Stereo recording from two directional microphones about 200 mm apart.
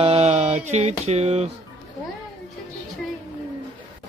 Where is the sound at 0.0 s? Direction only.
30° right (ahead or behind).